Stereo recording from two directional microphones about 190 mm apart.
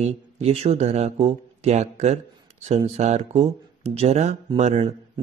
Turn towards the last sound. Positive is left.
turn(degrees=-35)  # may be behind; listen again after turning